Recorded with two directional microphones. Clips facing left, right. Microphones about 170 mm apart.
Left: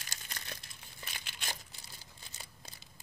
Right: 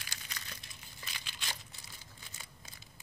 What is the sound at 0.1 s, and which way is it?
Crumpling, 50° left (ahead or behind).